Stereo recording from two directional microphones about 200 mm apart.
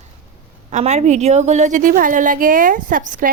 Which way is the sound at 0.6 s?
35° right (ahead or behind).